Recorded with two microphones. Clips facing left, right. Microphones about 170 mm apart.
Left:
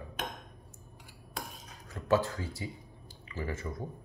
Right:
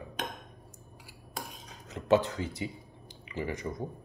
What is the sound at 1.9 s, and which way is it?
Speech, 20° right (ahead or behind).